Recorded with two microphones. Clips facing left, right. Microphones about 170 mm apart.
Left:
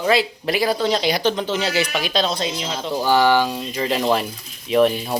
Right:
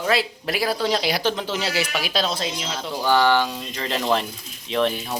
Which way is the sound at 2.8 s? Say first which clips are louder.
Left 2 dB; 10° left (ahead or behind).